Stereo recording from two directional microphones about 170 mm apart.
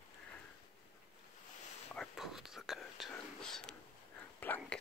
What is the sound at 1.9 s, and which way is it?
Whispering, centre (ahead or behind).